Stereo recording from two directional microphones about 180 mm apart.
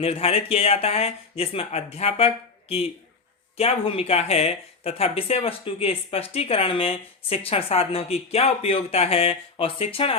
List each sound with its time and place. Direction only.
0.0 s speech: 35° left (ahead or behind)